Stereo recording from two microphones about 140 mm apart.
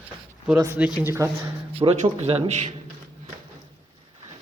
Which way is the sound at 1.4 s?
45° right (ahead or behind).